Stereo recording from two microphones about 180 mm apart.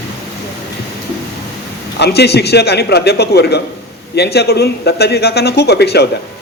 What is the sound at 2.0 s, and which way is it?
Speech, 65° left (ahead or behind).